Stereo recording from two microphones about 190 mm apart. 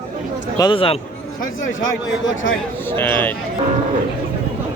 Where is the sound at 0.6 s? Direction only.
25° left (ahead or behind).